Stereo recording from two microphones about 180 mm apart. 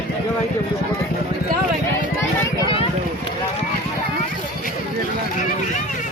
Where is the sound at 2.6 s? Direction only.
30° left (ahead or behind).